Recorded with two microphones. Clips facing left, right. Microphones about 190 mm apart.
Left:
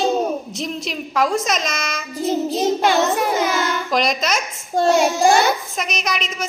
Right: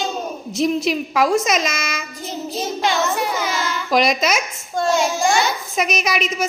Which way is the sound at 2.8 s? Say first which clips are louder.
Left 3 dB; 55° left (ahead or behind).